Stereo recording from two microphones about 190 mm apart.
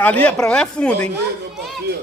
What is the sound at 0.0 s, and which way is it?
A man's voice, 5° left (ahead or behind).